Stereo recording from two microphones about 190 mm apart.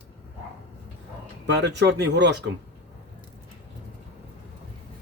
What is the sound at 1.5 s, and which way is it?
Speech, 65° right (ahead or behind).